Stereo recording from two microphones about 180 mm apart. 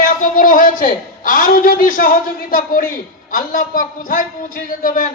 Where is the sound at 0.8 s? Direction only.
50° left (ahead or behind).